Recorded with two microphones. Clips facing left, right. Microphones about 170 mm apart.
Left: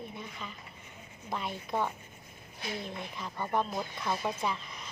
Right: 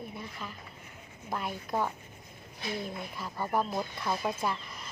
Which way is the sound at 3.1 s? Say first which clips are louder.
Right 1 dB; 5° right (ahead or behind).